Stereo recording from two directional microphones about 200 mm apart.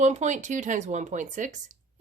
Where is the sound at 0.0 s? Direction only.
35° right (ahead or behind).